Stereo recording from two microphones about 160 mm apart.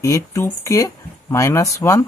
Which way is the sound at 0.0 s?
20° left (ahead or behind).